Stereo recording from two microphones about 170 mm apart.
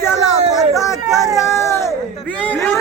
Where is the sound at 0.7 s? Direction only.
20° left (ahead or behind).